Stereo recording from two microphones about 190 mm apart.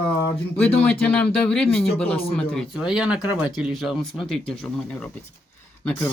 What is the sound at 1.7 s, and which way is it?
Speech, 30° left (ahead or behind).